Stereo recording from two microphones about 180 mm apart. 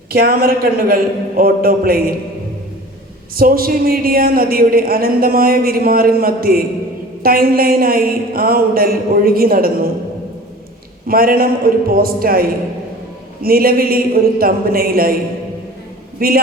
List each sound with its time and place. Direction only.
0.1 s a man's voice: 55° right (ahead or behind)
3.3 s speech: 55° right (ahead or behind)
11.0 s speech: 55° right (ahead or behind)
16.2 s speech: 55° right (ahead or behind)